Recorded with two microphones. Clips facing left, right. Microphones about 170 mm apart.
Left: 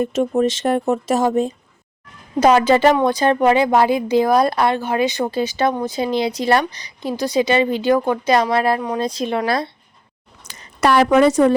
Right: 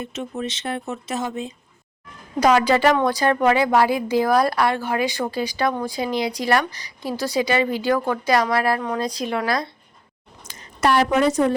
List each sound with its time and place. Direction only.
0.2 s speech: 45° left (ahead or behind)
2.4 s a woman's voice: 25° left (ahead or behind)
10.5 s a woman's voice: 80° left